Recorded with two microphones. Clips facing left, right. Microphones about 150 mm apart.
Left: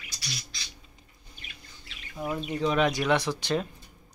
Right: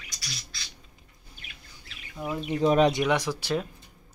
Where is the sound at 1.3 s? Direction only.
Centre (ahead or behind).